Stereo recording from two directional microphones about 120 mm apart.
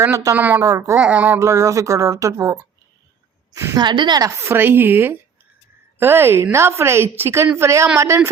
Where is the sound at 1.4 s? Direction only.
25° right (ahead or behind).